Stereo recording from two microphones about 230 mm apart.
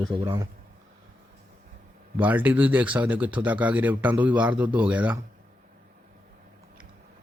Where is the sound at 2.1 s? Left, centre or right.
Centre.